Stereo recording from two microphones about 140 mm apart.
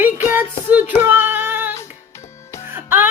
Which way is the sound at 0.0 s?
15° right (ahead or behind).